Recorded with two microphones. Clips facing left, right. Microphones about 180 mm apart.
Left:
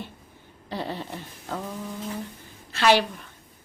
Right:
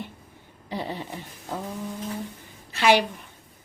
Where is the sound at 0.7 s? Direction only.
15° right (ahead or behind).